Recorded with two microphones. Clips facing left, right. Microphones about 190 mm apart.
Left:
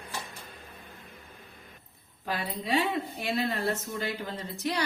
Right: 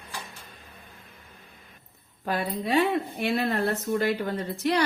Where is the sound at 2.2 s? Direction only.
55° right (ahead or behind).